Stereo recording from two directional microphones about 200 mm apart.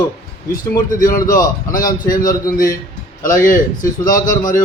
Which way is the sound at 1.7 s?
45° left (ahead or behind).